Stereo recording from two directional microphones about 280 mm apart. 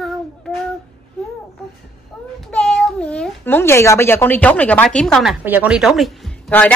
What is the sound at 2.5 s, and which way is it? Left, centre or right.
A child's voice, centre.